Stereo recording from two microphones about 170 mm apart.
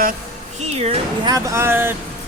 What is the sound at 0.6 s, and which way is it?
Speech, 35° right (ahead or behind).